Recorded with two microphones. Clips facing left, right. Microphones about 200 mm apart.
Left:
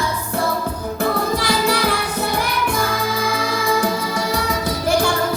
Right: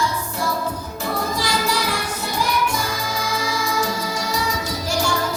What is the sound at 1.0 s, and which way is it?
Music, 60° left (ahead or behind).